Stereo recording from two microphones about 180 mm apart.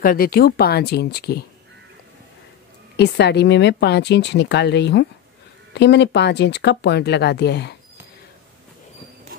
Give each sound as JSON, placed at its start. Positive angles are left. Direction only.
{"t": 0.0, "sound": "speech", "side_deg": 55}
{"t": 3.0, "sound": "speech", "side_deg": 70}